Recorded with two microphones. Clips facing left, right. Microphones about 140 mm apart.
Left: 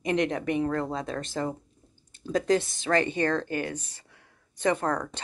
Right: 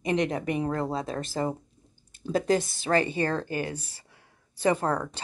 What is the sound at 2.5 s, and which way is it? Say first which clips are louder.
A woman's voice: even; 35° right (ahead or behind).